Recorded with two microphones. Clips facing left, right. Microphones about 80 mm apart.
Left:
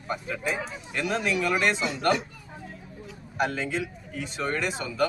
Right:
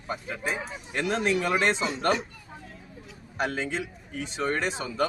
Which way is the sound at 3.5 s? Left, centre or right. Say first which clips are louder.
Left 1 dB; right.